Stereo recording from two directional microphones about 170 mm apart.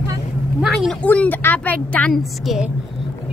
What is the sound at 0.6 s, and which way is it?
A woman's voice, centre (ahead or behind).